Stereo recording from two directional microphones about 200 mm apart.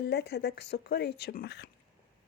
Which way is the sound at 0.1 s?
55° left (ahead or behind).